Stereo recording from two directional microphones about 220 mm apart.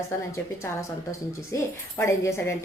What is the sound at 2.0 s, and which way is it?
Speech, 10° left (ahead or behind).